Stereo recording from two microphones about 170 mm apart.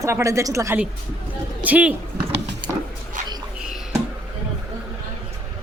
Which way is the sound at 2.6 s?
25° right (ahead or behind).